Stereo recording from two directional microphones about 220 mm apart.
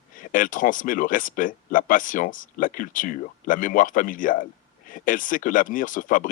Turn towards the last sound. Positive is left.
turn(degrees=35)  # may be behind; listen again after turning